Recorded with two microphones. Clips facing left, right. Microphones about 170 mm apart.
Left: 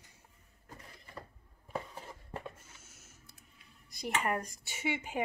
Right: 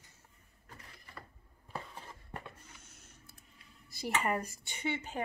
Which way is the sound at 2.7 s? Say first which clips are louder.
Right 1 dB; 5° left (ahead or behind).